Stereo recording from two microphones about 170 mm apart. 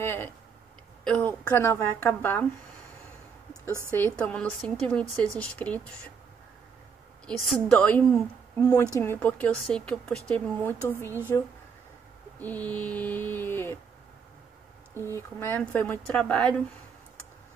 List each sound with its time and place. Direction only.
0.0 s a woman's voice: 10° left (ahead or behind)
1.4 s a woman's voice: 15° left (ahead or behind)
3.9 s a woman's voice: 10° left (ahead or behind)
7.2 s a woman's voice: 5° left (ahead or behind)
15.1 s a woman's voice: 10° left (ahead or behind)